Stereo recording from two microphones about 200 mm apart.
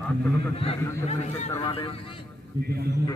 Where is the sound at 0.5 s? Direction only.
30° left (ahead or behind).